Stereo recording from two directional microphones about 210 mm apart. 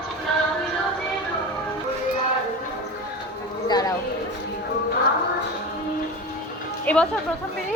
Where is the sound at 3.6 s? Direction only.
20° left (ahead or behind).